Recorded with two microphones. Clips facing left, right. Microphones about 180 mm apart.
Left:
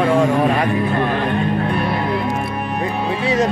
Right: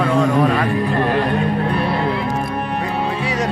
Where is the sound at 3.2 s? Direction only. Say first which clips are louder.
Left 4 dB; 25° left (ahead or behind).